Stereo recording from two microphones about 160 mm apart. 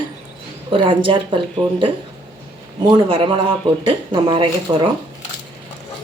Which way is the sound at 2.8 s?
30° right (ahead or behind).